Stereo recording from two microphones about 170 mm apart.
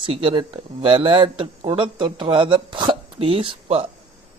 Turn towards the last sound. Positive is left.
turn(degrees=-35)  # may be behind; listen again after turning